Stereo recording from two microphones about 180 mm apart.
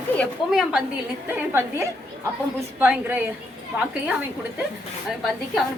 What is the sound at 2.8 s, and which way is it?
Speech, 10° right (ahead or behind).